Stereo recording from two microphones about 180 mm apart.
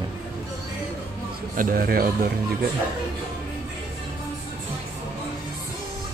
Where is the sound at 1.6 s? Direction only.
55° right (ahead or behind).